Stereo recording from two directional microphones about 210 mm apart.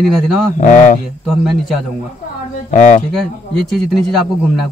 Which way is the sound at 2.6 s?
35° left (ahead or behind).